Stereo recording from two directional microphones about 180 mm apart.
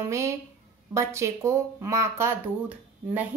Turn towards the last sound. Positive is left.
turn(degrees=-10)  # may be behind; listen again after turning